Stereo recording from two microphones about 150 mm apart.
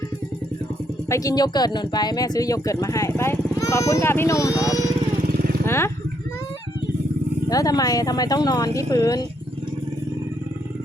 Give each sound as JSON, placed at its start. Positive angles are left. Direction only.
{"t": 1.1, "sound": "speech", "side_deg": 25}
{"t": 5.6, "sound": "a sound", "side_deg": 15}
{"t": 7.4, "sound": "speech", "side_deg": 25}